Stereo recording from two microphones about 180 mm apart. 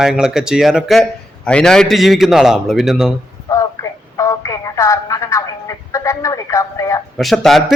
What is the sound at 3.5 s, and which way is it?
A woman's voice, 15° left (ahead or behind).